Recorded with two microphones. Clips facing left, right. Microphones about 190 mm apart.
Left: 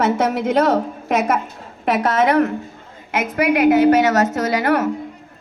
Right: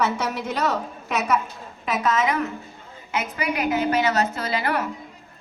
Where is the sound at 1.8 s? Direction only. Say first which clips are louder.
Left 6 dB; 65° left (ahead or behind).